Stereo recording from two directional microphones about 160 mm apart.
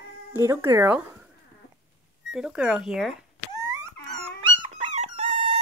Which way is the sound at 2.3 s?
5° right (ahead or behind).